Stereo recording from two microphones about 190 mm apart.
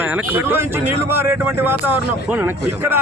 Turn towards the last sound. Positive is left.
turn(degrees=-10)  # may be behind; listen again after turning